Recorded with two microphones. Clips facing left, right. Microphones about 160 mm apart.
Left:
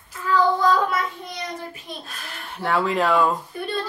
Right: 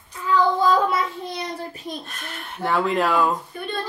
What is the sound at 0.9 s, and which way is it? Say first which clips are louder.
Child singing: right 2 dB; 30° right (ahead or behind).